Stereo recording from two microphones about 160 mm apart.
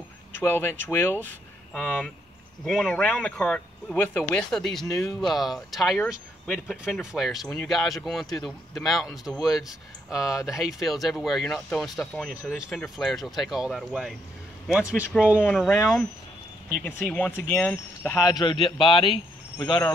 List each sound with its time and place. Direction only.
0.4 s speech: 15° left (ahead or behind)
16.8 s speech: 10° left (ahead or behind)
18.3 s speech: 30° left (ahead or behind)